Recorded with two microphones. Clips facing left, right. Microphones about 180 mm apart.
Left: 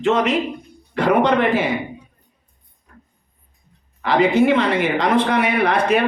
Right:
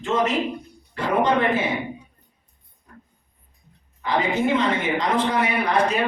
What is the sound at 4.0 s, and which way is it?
A woman's voice, 75° left (ahead or behind).